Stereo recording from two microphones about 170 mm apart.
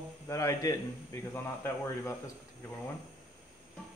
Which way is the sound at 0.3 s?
15° left (ahead or behind).